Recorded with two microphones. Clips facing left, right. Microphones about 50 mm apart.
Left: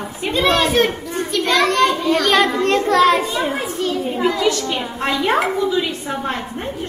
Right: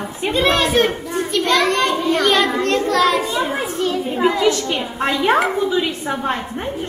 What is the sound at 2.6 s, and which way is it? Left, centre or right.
Speech, left.